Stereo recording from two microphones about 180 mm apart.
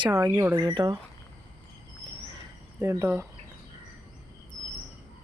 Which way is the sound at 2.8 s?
15° right (ahead or behind).